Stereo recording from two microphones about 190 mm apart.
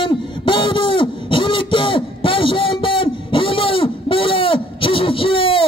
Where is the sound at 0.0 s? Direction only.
25° left (ahead or behind).